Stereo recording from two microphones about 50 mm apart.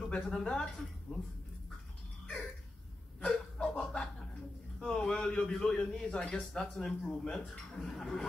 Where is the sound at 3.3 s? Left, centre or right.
Centre.